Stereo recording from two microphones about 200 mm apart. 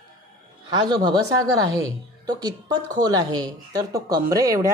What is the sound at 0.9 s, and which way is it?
Speech, 20° right (ahead or behind).